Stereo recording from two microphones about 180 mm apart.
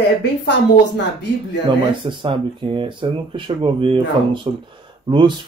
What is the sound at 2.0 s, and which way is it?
Speech, 25° right (ahead or behind).